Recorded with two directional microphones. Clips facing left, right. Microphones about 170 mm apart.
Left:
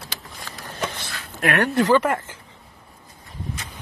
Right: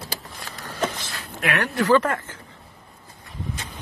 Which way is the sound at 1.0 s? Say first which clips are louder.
Left 3 dB; 50° left (ahead or behind).